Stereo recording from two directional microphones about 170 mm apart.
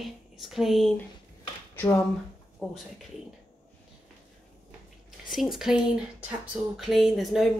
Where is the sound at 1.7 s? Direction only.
15° left (ahead or behind).